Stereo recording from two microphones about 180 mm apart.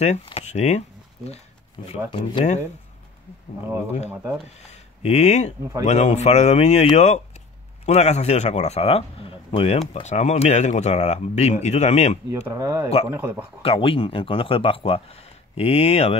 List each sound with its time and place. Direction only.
0.0 s a sound: 35° left (ahead or behind)
2.0 s speech: 30° left (ahead or behind)
4.1 s speech: 10° right (ahead or behind)
5.0 s speech: 40° left (ahead or behind)
12.3 s speech: 15° right (ahead or behind)
13.6 s speech: 30° left (ahead or behind)